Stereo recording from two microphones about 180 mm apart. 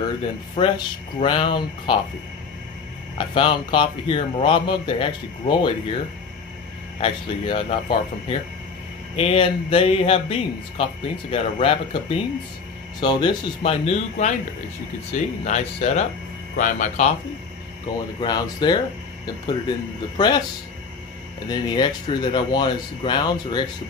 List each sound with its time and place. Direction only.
0.6 s a man's voice: 30° left (ahead or behind)
3.2 s a man's voice: 30° left (ahead or behind)
7.0 s a man's voice: 30° left (ahead or behind)
13.0 s speech: 25° left (ahead or behind); by 17.1 s 40° left (ahead or behind)
18.2 s a man's voice: 25° left (ahead or behind)
20.2 s a man's voice: 25° left (ahead or behind)
21.5 s a man's voice: 25° left (ahead or behind)